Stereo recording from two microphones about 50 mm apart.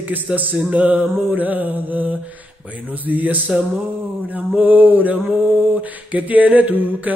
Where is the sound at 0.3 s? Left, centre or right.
Right.